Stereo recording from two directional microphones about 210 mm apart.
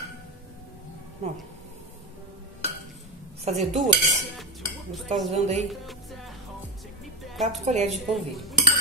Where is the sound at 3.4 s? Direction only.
30° right (ahead or behind).